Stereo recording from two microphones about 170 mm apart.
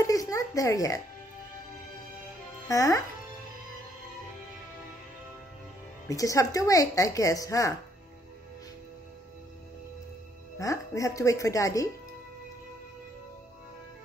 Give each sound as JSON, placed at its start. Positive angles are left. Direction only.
{"t": 0.0, "sound": "music", "side_deg": 20}
{"t": 2.7, "sound": "speech", "side_deg": 20}
{"t": 6.0, "sound": "a woman's voice", "side_deg": 20}
{"t": 10.6, "sound": "a woman's voice", "side_deg": 20}